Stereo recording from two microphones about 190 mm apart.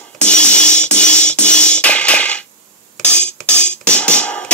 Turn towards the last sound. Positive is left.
turn(degrees=5)  # may be behind; listen again after turning